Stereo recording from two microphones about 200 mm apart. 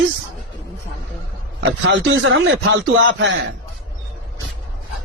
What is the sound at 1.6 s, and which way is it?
A man's voice, 70° right (ahead or behind).